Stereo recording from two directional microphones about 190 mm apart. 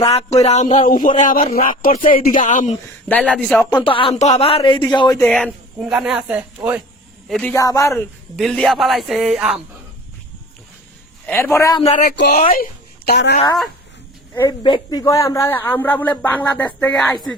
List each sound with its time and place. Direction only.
0.0 s a man's voice: 30° left (ahead or behind)
3.1 s speech: 5° left (ahead or behind)
3.7 s speech: 25° left (ahead or behind)
5.2 s speech: centre (ahead or behind)
7.3 s a man's voice: 10° left (ahead or behind)
8.4 s speech: 5° left (ahead or behind)
11.3 s a man's voice: 15° left (ahead or behind)
11.8 s a man's voice: 40° left (ahead or behind)
12.1 s speech: 60° left (ahead or behind)
12.4 s speech: 50° left (ahead or behind)
13.1 s speech: 60° left (ahead or behind)
14.6 s a man's voice: 25° left (ahead or behind); by 17.1 s 5° left (ahead or behind)